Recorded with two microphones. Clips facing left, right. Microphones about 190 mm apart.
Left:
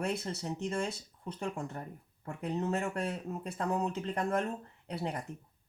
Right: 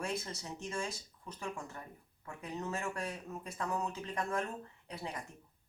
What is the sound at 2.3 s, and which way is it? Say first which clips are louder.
Speech: left 8 dB; 60° left (ahead or behind).